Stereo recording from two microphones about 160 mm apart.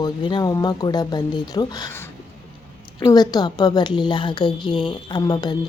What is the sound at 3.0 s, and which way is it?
A woman's voice, 25° left (ahead or behind).